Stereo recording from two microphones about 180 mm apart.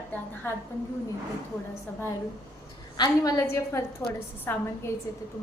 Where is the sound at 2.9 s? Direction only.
20° left (ahead or behind).